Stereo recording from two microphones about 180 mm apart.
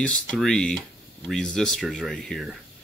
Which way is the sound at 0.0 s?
5° left (ahead or behind).